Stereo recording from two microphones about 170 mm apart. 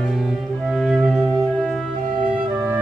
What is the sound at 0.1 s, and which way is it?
Music, centre (ahead or behind).